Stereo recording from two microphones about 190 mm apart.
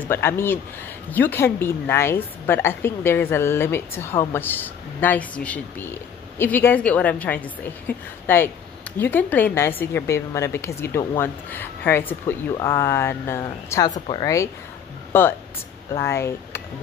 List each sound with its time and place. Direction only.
0.1 s a woman's voice: 10° left (ahead or behind)
13.9 s a woman's voice: 30° left (ahead or behind)
14.2 s a woman's voice: 15° left (ahead or behind)